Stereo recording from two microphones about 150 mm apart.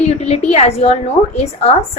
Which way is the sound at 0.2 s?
45° left (ahead or behind).